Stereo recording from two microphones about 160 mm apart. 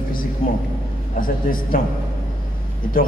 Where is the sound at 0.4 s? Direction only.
35° left (ahead or behind).